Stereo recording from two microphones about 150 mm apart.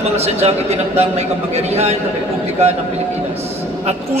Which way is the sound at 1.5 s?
45° right (ahead or behind).